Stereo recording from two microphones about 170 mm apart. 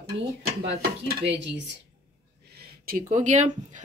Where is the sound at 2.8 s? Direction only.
50° right (ahead or behind).